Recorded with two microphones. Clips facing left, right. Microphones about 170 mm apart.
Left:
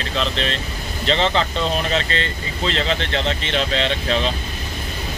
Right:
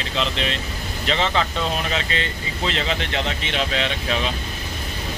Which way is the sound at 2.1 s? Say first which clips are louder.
Left 2 dB; 10° right (ahead or behind).